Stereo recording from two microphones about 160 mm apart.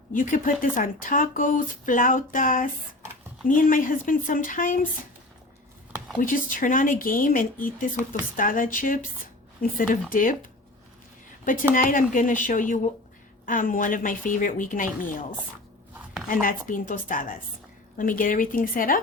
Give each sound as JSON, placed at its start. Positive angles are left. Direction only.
{"t": 0.1, "sound": "speech", "side_deg": 55}
{"t": 6.1, "sound": "speech", "side_deg": 60}
{"t": 11.7, "sound": "speech", "side_deg": 60}
{"t": 16.3, "sound": "speech", "side_deg": 60}